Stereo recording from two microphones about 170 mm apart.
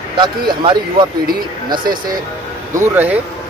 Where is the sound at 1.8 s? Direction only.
55° right (ahead or behind).